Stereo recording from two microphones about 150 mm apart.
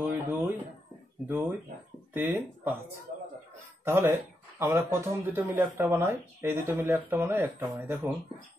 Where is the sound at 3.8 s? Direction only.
15° right (ahead or behind).